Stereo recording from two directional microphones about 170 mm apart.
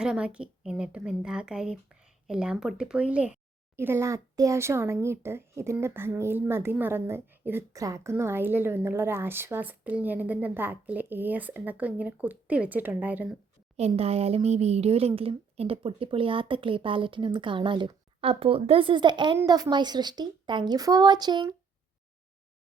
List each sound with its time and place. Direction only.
0.0 s a woman's voice: 5° right (ahead or behind)
13.7 s a woman's voice: 35° right (ahead or behind)